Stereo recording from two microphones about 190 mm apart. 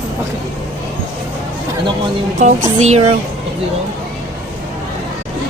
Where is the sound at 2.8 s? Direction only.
35° right (ahead or behind).